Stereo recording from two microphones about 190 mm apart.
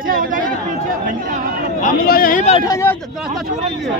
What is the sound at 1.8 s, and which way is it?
Speech, 50° left (ahead or behind).